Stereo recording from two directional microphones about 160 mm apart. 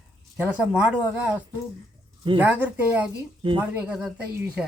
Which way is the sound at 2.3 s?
10° right (ahead or behind).